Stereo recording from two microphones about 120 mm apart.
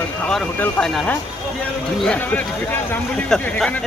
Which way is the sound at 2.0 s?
10° left (ahead or behind).